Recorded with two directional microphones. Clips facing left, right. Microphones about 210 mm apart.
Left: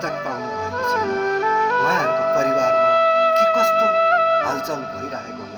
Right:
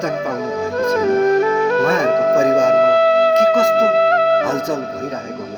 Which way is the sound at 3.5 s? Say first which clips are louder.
Right 5 dB; 20° right (ahead or behind).